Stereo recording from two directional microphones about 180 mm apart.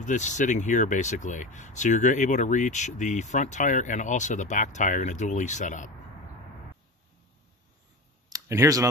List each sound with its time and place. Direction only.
0.0 s speech: 40° left (ahead or behind)
8.3 s clicking: 20° right (ahead or behind)